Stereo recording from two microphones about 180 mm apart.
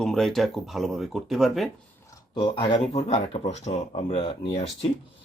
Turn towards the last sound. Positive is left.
turn(degrees=30)  # may be behind; listen again after turning